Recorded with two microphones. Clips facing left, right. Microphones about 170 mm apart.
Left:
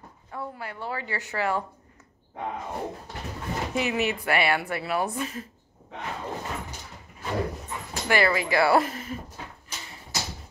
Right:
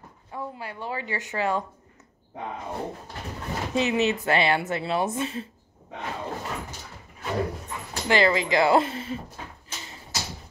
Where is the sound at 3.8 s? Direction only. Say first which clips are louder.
Right 4 dB; 20° right (ahead or behind).